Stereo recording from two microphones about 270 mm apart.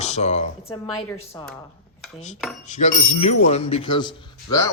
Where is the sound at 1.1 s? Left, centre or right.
Centre.